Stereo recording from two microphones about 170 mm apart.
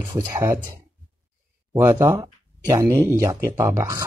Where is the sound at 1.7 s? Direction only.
15° right (ahead or behind).